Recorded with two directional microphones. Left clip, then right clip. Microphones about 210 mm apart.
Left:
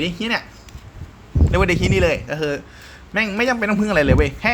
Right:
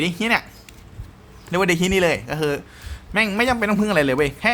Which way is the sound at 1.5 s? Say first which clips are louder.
Even; 10° right (ahead or behind).